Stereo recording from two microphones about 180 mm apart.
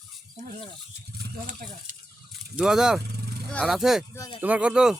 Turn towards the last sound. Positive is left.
turn(degrees=-5)  # may be behind; listen again after turning